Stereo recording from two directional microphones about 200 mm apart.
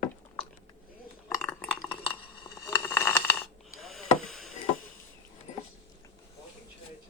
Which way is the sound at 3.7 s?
Centre (ahead or behind).